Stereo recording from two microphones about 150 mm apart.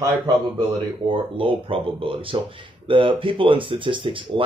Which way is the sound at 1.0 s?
35° right (ahead or behind).